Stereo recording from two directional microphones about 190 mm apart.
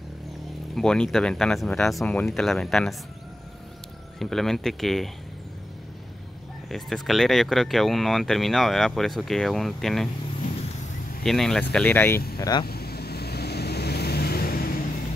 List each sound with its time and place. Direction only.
0.7 s speech: 5° left (ahead or behind)
4.2 s speech: centre (ahead or behind)
6.7 s speech: centre (ahead or behind)
11.2 s speech: centre (ahead or behind)
12.4 s speech: 20° left (ahead or behind)
12.6 s vehicle: 55° left (ahead or behind)